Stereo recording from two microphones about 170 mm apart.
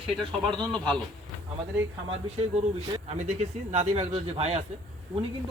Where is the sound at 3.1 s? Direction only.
40° right (ahead or behind).